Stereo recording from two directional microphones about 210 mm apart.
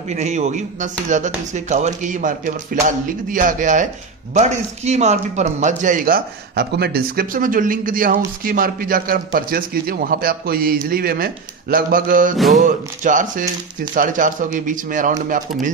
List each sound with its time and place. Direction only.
0.1 s a man's voice: 35° right (ahead or behind)
12.4 s music: centre (ahead or behind)
12.6 s speech: 35° right (ahead or behind)